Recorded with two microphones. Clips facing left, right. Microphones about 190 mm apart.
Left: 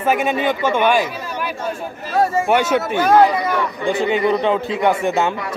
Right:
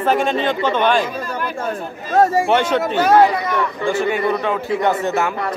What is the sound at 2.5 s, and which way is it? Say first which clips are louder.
Speech: even; 10° left (ahead or behind).